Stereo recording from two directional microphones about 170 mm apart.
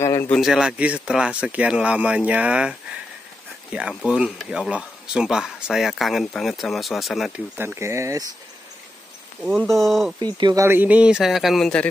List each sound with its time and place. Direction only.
0.0 s a sound: 15° left (ahead or behind)
0.3 s speech: centre (ahead or behind)
4.0 s speech: 5° right (ahead or behind)
7.5 s speech: 15° right (ahead or behind)
9.6 s speech: centre (ahead or behind)
10.2 s speech: 25° right (ahead or behind); by 11.9 s 5° left (ahead or behind)